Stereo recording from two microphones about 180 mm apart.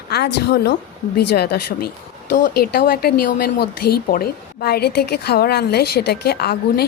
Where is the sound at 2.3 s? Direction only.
50° left (ahead or behind).